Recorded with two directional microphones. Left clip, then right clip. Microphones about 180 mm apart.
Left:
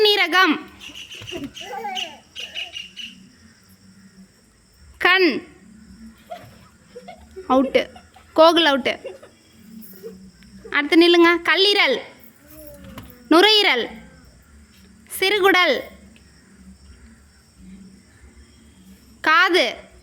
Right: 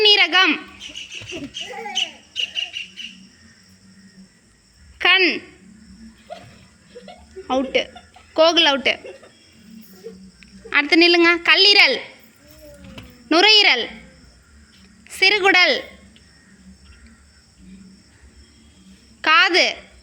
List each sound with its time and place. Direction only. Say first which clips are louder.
0.0 s a sound: right 2 dB; 20° left (ahead or behind)
4.9 s a woman's voice: right 1 dB; 30° left (ahead or behind)
7.4 s a woman's voice: left 3 dB; 35° left (ahead or behind)
10.4 s speech: right 3 dB; 10° left (ahead or behind)
13.2 s a woman's voice: right 1 dB; 25° left (ahead or behind)
15.1 s a woman's voice: right 2 dB; 20° left (ahead or behind)
19.2 s a woman's voice: right 1 dB; 20° left (ahead or behind)